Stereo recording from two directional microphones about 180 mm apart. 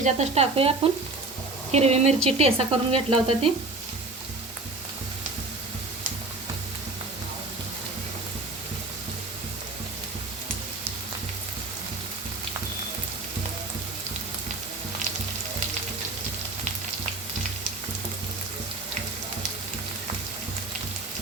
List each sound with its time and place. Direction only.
0.0 s speech: 35° right (ahead or behind)
1.7 s speech: 35° right (ahead or behind)